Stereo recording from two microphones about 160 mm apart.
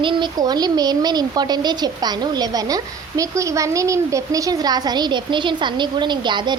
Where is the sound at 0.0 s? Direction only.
30° right (ahead or behind).